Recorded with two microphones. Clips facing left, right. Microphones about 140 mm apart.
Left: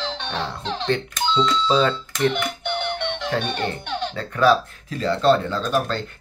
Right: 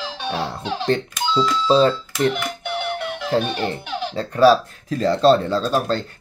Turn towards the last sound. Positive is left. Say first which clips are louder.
# right 3 dB
turn(degrees=-30)  # may be behind; listen again after turning